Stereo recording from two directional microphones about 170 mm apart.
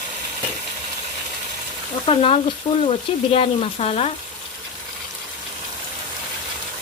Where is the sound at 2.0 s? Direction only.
35° left (ahead or behind).